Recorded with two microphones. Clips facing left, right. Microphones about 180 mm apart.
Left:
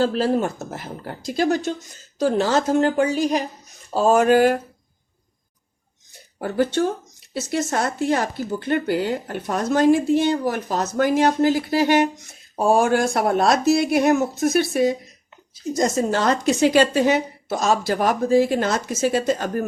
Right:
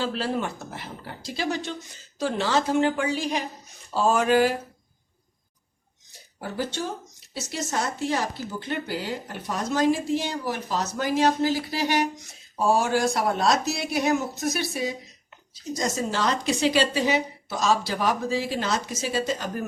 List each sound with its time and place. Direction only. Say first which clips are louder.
0.0 s a woman's voice: left 7 dB; 40° left (ahead or behind)
6.4 s a woman's voice: left 9 dB; 55° left (ahead or behind)